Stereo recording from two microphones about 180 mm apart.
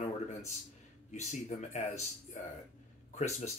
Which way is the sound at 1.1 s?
40° left (ahead or behind).